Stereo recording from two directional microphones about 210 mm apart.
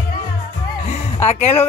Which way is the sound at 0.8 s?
30° left (ahead or behind).